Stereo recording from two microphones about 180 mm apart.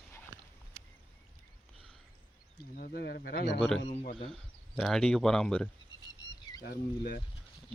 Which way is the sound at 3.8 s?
40° left (ahead or behind).